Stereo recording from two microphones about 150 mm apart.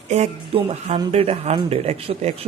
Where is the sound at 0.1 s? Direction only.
45° right (ahead or behind).